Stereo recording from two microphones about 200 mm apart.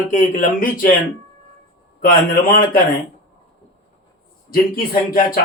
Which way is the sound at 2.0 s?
45° left (ahead or behind).